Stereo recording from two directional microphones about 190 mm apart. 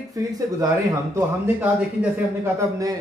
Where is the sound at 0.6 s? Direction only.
20° right (ahead or behind).